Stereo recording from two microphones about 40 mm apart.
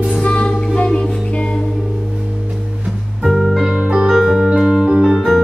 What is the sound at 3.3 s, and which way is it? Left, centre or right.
Music, centre.